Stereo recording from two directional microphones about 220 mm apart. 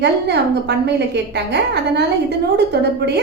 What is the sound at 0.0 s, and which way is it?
A woman's voice, 50° right (ahead or behind).